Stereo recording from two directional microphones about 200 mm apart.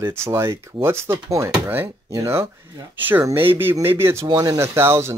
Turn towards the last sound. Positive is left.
turn(degrees=-15)  # may be behind; listen again after turning